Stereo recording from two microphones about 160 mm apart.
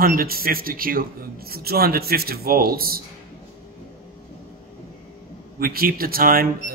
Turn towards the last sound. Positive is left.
turn(degrees=-65)  # may be behind; listen again after turning